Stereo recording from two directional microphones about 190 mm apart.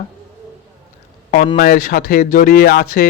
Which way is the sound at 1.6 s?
45° left (ahead or behind).